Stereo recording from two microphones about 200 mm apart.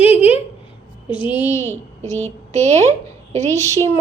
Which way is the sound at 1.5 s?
15° left (ahead or behind).